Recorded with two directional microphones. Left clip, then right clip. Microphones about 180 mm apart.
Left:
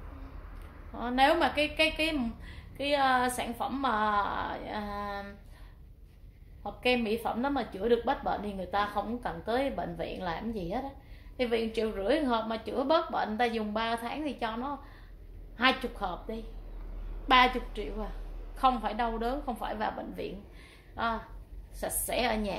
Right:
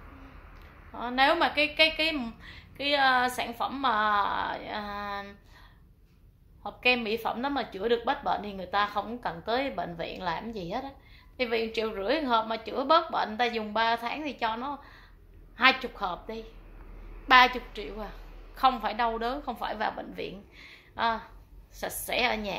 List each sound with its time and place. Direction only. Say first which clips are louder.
0.9 s a woman's voice: right 1 dB; centre (ahead or behind)
6.6 s a woman's voice: right 3 dB; 5° right (ahead or behind)
17.3 s a woman's voice: right 4 dB; 5° left (ahead or behind)